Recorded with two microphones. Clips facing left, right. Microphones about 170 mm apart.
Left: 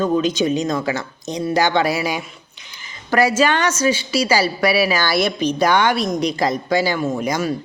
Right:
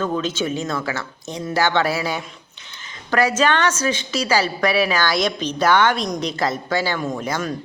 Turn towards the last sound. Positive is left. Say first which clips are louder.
# left 4 dB
turn(degrees=15)  # may be behind; listen again after turning